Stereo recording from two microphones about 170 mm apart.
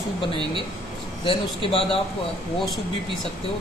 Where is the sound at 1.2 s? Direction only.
35° left (ahead or behind).